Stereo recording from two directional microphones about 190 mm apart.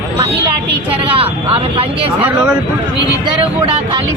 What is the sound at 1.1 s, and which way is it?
Speech, 30° right (ahead or behind).